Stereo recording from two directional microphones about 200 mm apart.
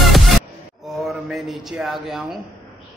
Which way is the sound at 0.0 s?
Centre (ahead or behind).